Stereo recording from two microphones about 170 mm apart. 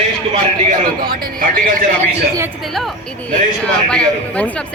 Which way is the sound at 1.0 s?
55° right (ahead or behind).